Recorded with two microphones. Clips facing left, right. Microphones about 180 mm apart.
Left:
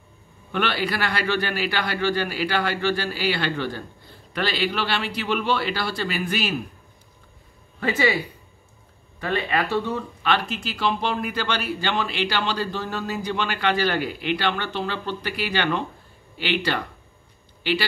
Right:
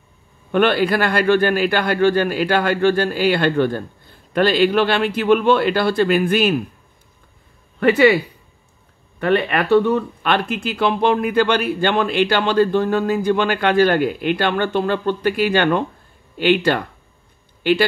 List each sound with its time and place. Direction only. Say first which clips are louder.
0.5 s speech: right 9 dB; 50° right (ahead or behind)
7.8 s speech: right 9 dB; 60° right (ahead or behind)
9.2 s speech: right 7 dB; 60° right (ahead or behind)